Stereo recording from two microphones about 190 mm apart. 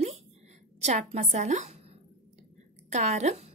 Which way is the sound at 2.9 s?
35° right (ahead or behind).